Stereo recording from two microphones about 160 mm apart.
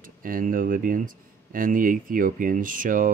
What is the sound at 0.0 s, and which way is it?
Speech, 60° right (ahead or behind).